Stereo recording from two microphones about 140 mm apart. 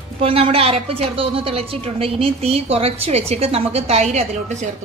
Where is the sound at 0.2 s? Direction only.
40° right (ahead or behind).